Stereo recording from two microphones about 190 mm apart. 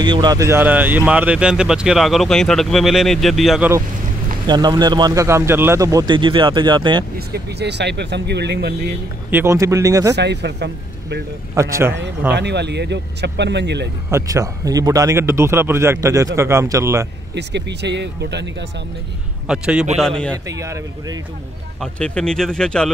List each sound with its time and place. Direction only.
0.0 s speech: 25° right (ahead or behind); by 3.7 s centre (ahead or behind)
4.5 s a man's voice: 20° right (ahead or behind)
7.2 s speech: 55° right (ahead or behind)
9.3 s a man's voice: 15° right (ahead or behind)
10.1 s speech: 65° right (ahead or behind)
11.5 s a man's voice: 15° right (ahead or behind)
12.4 s speech: 65° right (ahead or behind)
14.1 s a man's voice: 15° right (ahead or behind)
17.4 s speech: 65° right (ahead or behind)
19.4 s speech: 5° right (ahead or behind)
20.4 s a man's voice: 15° right (ahead or behind)
21.9 s speech: 5° left (ahead or behind)